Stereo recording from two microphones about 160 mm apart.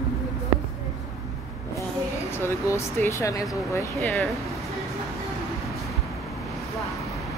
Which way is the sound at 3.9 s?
Centre (ahead or behind).